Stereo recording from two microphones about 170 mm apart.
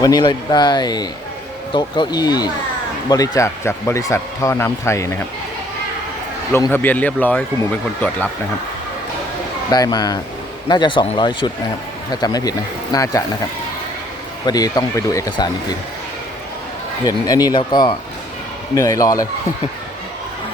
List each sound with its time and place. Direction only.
0.0 s speech: 25° left (ahead or behind)
6.5 s speech: 10° left (ahead or behind)
9.6 s speech: 20° left (ahead or behind)
14.4 s speech: 25° left (ahead or behind)
17.1 s speech: 20° left (ahead or behind)